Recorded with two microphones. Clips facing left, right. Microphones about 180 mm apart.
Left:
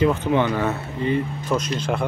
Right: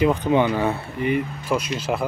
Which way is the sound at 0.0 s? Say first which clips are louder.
Right 1 dB; 15° right (ahead or behind).